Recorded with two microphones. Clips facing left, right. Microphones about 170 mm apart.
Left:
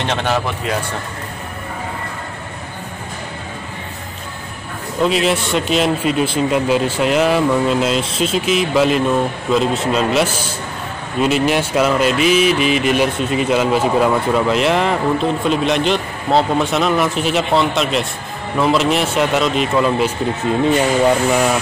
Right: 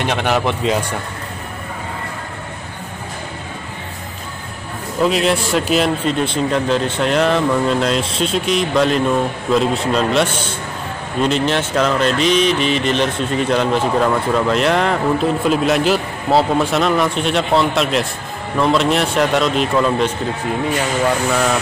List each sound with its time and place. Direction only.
0.0 s speech: 10° right (ahead or behind)
5.0 s speech: centre (ahead or behind)
10.2 s a man's voice: 30° right (ahead or behind)
11.1 s speech: 5° left (ahead or behind)
20.6 s speech: 15° left (ahead or behind)